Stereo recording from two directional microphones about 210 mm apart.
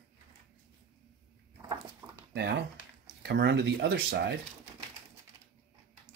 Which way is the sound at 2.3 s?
50° right (ahead or behind).